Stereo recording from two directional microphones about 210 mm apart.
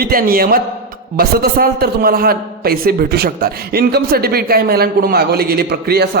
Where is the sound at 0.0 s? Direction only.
45° right (ahead or behind).